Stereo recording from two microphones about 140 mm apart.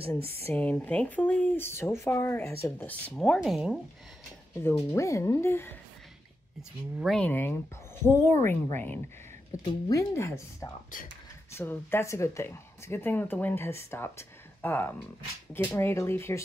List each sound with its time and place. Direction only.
0.4 s speech: 15° left (ahead or behind); by 3.8 s centre (ahead or behind)
4.6 s a woman's voice: 20° left (ahead or behind)
7.2 s a woman's voice: 15° left (ahead or behind)